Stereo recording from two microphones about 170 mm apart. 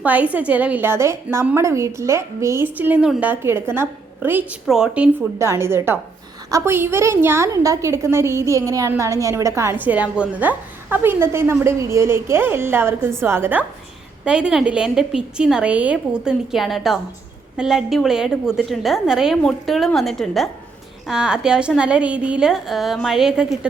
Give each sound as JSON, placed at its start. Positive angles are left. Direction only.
{"t": 0.0, "sound": "a woman's voice", "side_deg": -10}
{"t": 5.4, "sound": "a woman's voice", "side_deg": -15}